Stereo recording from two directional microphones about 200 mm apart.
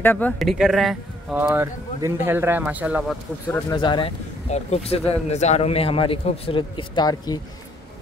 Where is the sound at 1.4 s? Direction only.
15° right (ahead or behind).